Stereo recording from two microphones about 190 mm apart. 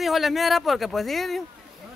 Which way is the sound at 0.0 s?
Centre (ahead or behind).